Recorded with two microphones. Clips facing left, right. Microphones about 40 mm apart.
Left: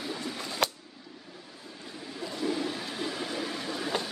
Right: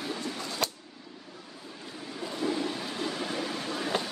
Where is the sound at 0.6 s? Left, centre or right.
Left.